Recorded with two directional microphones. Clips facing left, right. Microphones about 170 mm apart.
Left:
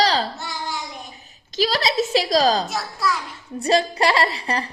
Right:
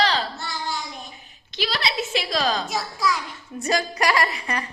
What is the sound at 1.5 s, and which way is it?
A woman's voice, 40° left (ahead or behind).